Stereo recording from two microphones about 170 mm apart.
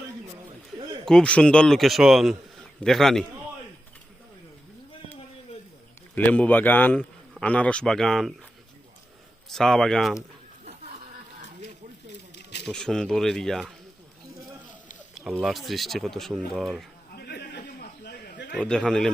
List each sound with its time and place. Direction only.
1.0 s speech: 5° left (ahead or behind)
6.1 s a man's voice: 10° left (ahead or behind)
9.5 s speech: 5° left (ahead or behind)
12.4 s a sound: 80° left
12.6 s speech: 5° left (ahead or behind)
15.1 s speech: centre (ahead or behind)
17.2 s a sound: 70° left (ahead or behind)
18.6 s speech: 5° left (ahead or behind)